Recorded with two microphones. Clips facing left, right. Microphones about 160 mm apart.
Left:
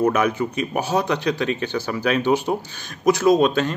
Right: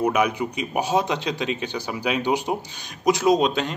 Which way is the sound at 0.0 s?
15° right (ahead or behind).